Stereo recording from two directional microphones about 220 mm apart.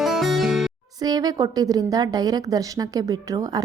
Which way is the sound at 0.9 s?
15° right (ahead or behind).